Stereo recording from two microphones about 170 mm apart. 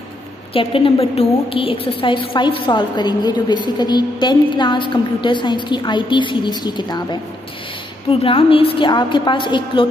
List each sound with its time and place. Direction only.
0.5 s a woman's voice: 30° left (ahead or behind)